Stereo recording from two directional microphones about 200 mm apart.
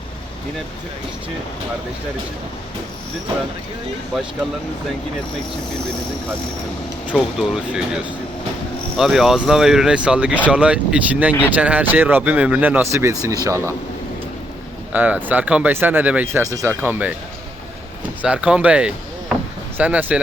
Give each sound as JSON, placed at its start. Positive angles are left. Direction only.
{"t": 7.1, "sound": "speech", "side_deg": -5}
{"t": 14.9, "sound": "speech", "side_deg": -10}
{"t": 18.2, "sound": "speech", "side_deg": -5}